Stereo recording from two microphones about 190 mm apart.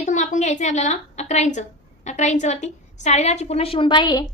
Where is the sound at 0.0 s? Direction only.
40° left (ahead or behind).